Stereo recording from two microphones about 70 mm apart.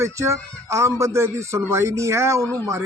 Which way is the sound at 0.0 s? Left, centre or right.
Right.